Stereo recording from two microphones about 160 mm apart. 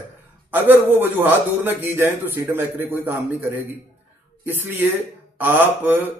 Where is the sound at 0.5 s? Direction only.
15° right (ahead or behind).